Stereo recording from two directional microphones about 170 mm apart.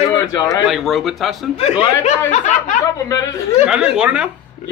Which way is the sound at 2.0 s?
45° left (ahead or behind).